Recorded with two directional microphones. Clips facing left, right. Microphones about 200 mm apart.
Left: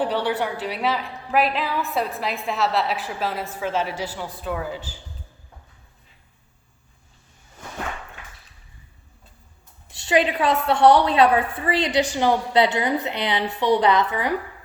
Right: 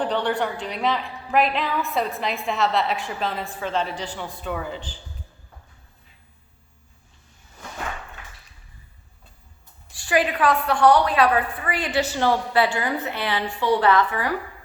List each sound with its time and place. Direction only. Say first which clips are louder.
0.0 s a woman's voice: even; 5° left (ahead or behind)
9.9 s a woman's voice: left 2 dB; 25° left (ahead or behind)